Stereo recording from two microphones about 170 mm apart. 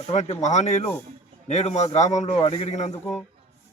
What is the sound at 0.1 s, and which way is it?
Speech, 40° left (ahead or behind).